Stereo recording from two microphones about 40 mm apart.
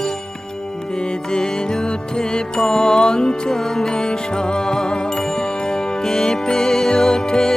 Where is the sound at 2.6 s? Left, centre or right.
Centre.